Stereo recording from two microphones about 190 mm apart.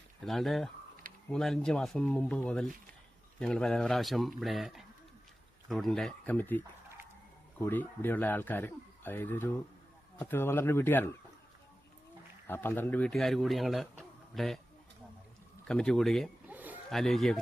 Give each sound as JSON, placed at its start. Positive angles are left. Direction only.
{"t": 0.3, "sound": "a man's voice", "side_deg": 0}
{"t": 12.5, "sound": "a man's voice", "side_deg": 10}
{"t": 15.6, "sound": "a man's voice", "side_deg": 5}
{"t": 16.5, "sound": "a sound", "side_deg": -10}
{"t": 16.9, "sound": "a man's voice", "side_deg": 0}